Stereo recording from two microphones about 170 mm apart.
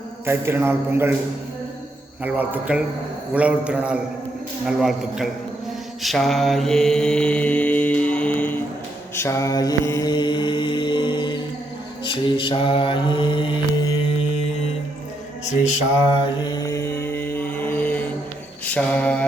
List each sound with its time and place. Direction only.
0.3 s a man's voice: 15° right (ahead or behind)
2.2 s a man's voice: 10° right (ahead or behind)
6.0 s mantra: centre (ahead or behind); by 13.9 s 30° left (ahead or behind)
16.4 s mantra: 25° left (ahead or behind); by 19.2 s 10° left (ahead or behind)